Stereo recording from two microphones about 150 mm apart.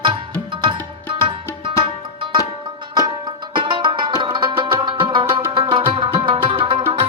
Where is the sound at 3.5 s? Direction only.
35° right (ahead or behind).